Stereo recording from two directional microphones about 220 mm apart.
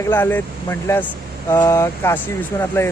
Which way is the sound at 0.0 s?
10° left (ahead or behind).